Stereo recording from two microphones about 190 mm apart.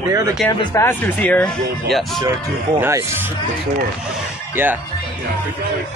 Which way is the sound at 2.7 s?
10° right (ahead or behind).